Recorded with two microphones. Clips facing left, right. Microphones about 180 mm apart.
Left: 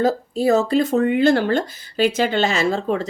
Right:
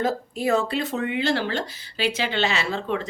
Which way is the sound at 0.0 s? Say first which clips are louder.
Left 6 dB; 35° left (ahead or behind).